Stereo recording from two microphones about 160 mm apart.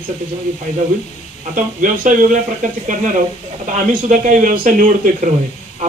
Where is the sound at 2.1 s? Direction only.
55° right (ahead or behind).